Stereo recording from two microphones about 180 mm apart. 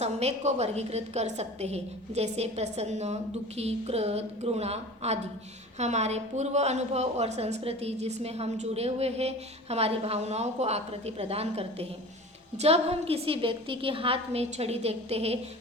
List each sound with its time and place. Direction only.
0.0 s a woman's voice: 35° right (ahead or behind)